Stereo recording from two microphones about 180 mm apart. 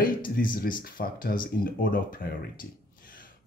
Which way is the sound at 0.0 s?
50° left (ahead or behind).